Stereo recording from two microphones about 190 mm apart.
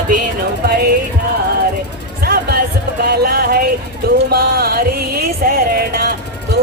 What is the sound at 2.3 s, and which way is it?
Music, 55° right (ahead or behind).